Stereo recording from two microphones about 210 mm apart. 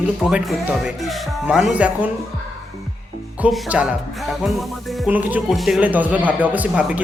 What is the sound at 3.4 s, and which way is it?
Speech, 5° right (ahead or behind).